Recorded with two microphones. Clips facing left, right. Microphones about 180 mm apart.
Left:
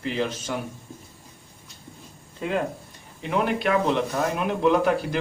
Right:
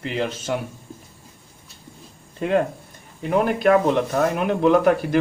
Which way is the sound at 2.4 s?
55° right (ahead or behind).